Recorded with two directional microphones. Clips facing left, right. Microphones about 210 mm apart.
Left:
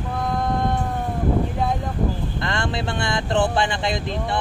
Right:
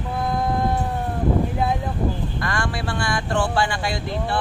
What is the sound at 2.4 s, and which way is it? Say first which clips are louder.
Speech: left 3 dB; 25° left (ahead or behind).